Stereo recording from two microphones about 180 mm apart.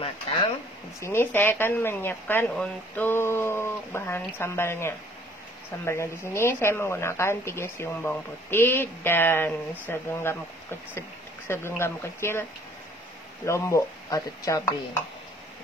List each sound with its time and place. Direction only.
1.0 s speech: 10° left (ahead or behind)
13.5 s speech: 15° left (ahead or behind)